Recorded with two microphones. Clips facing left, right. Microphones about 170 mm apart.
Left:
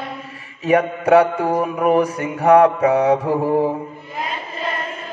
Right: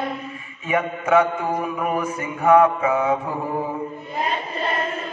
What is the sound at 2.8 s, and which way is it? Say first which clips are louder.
Mantra: left 5 dB; 40° left (ahead or behind).